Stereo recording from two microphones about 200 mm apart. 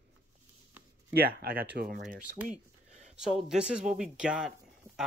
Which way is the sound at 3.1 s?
5° right (ahead or behind).